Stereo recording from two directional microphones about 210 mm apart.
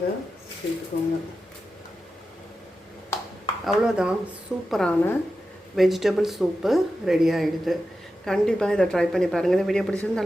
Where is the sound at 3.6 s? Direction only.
5° right (ahead or behind).